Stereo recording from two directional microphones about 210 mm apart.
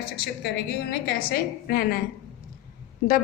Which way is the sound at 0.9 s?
50° left (ahead or behind).